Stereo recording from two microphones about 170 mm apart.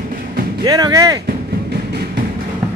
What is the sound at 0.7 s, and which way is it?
Speech, 20° right (ahead or behind).